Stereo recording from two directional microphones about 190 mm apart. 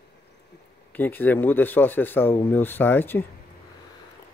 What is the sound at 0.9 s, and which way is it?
Speech, 10° left (ahead or behind).